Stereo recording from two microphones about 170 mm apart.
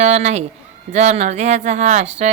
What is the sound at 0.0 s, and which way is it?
A woman's voice, 40° right (ahead or behind).